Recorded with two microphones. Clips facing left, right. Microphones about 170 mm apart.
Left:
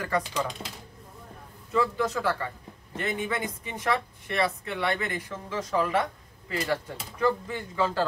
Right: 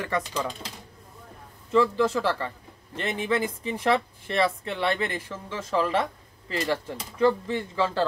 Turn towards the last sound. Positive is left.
turn(degrees=-25)  # may be behind; listen again after turning